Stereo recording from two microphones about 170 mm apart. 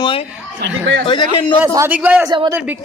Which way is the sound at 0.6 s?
90° right.